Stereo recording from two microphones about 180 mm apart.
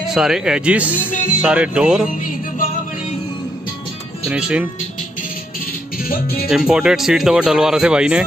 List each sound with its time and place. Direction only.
0.0 s speech: centre (ahead or behind)
4.3 s speech: 5° right (ahead or behind)
6.0 s speech: 55° left (ahead or behind)
6.5 s speech: 5° right (ahead or behind)